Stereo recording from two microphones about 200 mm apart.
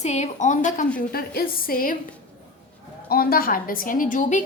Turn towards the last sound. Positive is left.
turn(degrees=40)  # may be behind; listen again after turning